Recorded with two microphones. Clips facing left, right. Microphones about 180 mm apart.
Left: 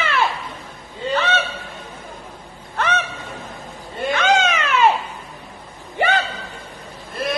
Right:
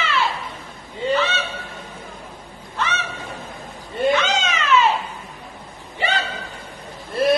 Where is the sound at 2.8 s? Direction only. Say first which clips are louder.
Left 3 dB; 55° left (ahead or behind).